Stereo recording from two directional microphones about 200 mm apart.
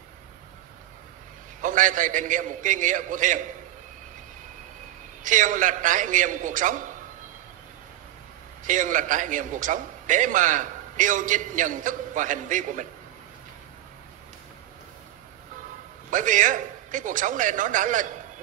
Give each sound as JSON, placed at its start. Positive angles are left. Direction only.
{"t": 1.6, "sound": "a man's voice", "side_deg": -40}
{"t": 5.2, "sound": "a man's voice", "side_deg": -40}
{"t": 8.6, "sound": "a man's voice", "side_deg": -40}
{"t": 16.1, "sound": "a man's voice", "side_deg": -40}